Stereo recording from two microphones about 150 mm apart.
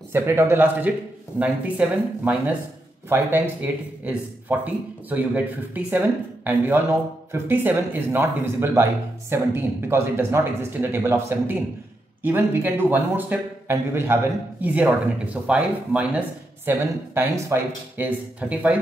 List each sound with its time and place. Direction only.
0.1 s a man's voice: 15° right (ahead or behind)